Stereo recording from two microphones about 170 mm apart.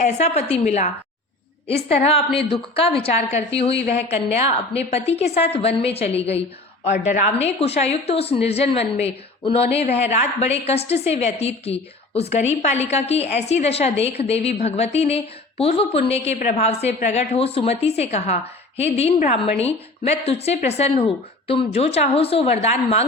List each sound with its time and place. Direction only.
0.0 s a woman's voice: 40° left (ahead or behind)
1.9 s a woman's voice: 35° left (ahead or behind)